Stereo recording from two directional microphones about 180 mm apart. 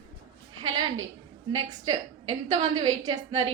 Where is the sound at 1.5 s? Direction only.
25° right (ahead or behind).